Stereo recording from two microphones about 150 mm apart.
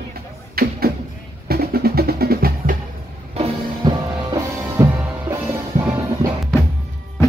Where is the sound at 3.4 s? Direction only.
45° right (ahead or behind).